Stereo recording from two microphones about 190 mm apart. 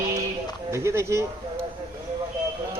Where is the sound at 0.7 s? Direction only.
15° right (ahead or behind).